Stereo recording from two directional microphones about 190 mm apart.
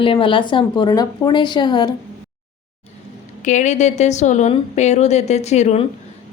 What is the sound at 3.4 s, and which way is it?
A woman's voice, 40° left (ahead or behind).